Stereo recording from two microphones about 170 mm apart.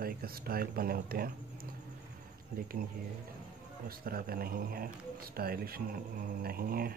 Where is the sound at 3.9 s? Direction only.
60° right (ahead or behind).